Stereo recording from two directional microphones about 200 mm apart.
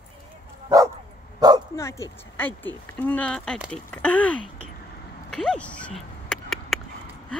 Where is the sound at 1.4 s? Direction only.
20° right (ahead or behind).